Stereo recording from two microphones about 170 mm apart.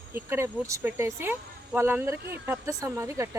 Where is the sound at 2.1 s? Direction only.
70° right (ahead or behind).